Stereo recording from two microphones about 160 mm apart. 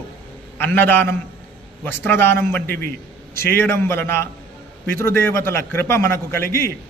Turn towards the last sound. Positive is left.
turn(degrees=15)  # may be behind; listen again after turning